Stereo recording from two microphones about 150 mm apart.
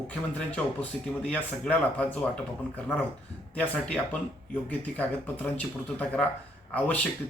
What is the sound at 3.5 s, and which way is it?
A man's voice, 10° left (ahead or behind).